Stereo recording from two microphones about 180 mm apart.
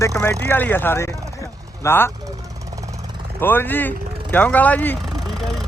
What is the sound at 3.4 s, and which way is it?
Speech, 10° left (ahead or behind).